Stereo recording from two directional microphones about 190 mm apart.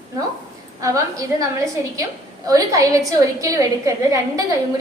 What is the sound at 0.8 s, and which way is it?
Speech, 15° right (ahead or behind).